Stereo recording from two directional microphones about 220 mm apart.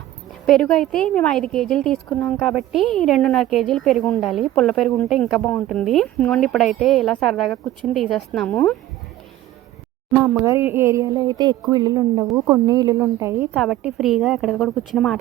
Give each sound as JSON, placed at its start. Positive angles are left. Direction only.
{"t": 0.4, "sound": "a woman's voice", "side_deg": 0}
{"t": 10.1, "sound": "speech", "side_deg": -10}
{"t": 13.5, "sound": "a woman's voice", "side_deg": 0}